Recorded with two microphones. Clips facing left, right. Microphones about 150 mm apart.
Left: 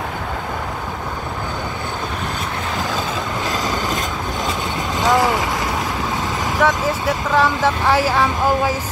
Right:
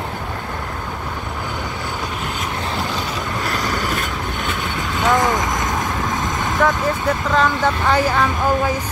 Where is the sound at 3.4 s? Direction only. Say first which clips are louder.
Even; 20° left (ahead or behind).